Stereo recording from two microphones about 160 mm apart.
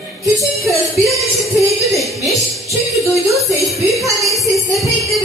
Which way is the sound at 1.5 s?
Centre (ahead or behind).